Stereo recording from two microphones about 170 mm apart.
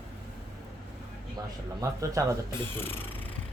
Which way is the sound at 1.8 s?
20° right (ahead or behind).